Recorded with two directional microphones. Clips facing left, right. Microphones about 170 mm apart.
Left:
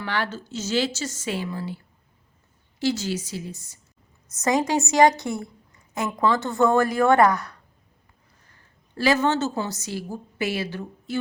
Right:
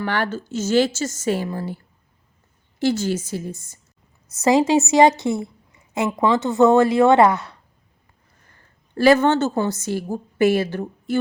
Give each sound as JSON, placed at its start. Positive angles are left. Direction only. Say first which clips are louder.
{"t": 0.0, "sound": "a woman's voice", "louder": "right 5 dB", "side_deg": -50}
{"t": 4.4, "sound": "a woman's voice", "louder": "right 6 dB", "side_deg": -25}
{"t": 9.0, "sound": "a woman's voice", "louder": "right 6 dB", "side_deg": -55}